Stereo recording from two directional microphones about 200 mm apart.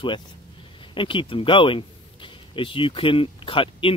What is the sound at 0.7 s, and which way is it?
Speech, 25° left (ahead or behind).